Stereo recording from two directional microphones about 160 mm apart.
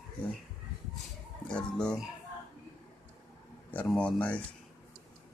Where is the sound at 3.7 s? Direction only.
5° left (ahead or behind).